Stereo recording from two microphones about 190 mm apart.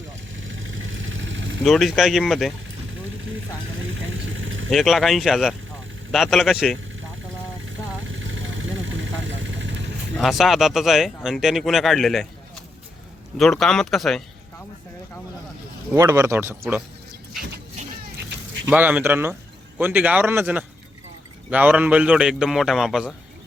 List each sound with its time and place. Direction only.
0.3 s vehicle: 90° right
1.6 s speech: centre (ahead or behind)
3.8 s vehicle: 90° right
4.7 s speech: centre (ahead or behind)
7.6 s vehicle: 90° right; by 9.9 s 75° right (ahead or behind)
10.2 s speech: centre (ahead or behind)
13.3 s speech: centre (ahead or behind)
16.0 s speech: 15° right (ahead or behind)
18.7 s speech: 10° right (ahead or behind)